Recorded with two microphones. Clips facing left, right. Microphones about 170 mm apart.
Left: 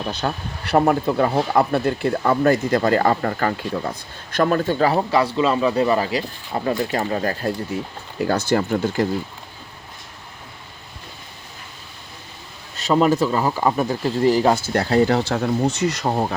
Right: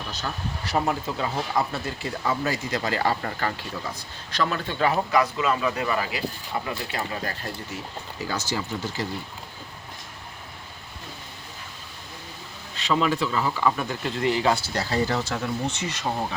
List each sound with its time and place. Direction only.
0.0 s speech: 55° left (ahead or behind)
8.2 s speech: 55° left (ahead or behind)
12.7 s speech: 45° left (ahead or behind)
15.6 s speech: 40° left (ahead or behind)
16.0 s speech: 50° left (ahead or behind)